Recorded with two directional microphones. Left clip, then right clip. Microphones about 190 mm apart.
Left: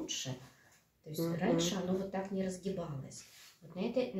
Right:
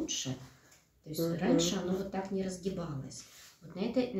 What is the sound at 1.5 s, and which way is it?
Speech, 10° left (ahead or behind).